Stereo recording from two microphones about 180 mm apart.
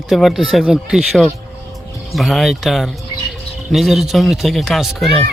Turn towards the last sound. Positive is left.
turn(degrees=0)  # may be behind; listen again after turning